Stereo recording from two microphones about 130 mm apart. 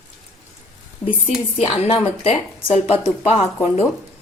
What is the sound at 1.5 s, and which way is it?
A woman's voice, 45° left (ahead or behind).